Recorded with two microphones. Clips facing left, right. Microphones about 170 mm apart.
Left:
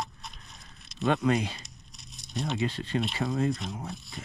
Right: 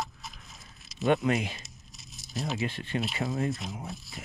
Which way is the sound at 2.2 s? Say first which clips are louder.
Left 1 dB; centre (ahead or behind).